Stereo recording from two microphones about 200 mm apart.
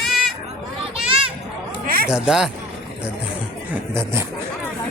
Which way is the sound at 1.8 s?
45° right (ahead or behind).